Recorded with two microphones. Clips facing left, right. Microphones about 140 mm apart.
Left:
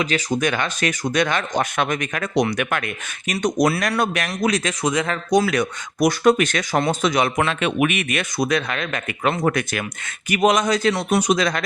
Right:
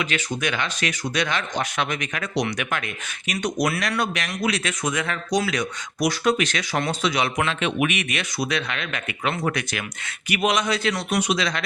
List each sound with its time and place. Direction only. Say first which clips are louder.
0.0 s speech: left 5 dB; 40° left (ahead or behind)
3.3 s speech: left 5 dB; 40° left (ahead or behind)
5.3 s speech: left 6 dB; 50° left (ahead or behind); by 11.3 s 35° left (ahead or behind)
11.3 s speech: left 5 dB; 45° left (ahead or behind)